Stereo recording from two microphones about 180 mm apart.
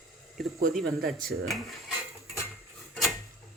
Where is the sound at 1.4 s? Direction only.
Centre (ahead or behind).